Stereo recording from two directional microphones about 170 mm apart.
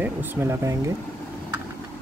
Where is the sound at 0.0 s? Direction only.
10° right (ahead or behind).